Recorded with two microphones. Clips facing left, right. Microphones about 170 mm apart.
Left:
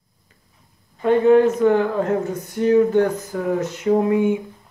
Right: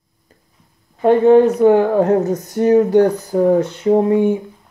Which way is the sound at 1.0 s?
35° right (ahead or behind).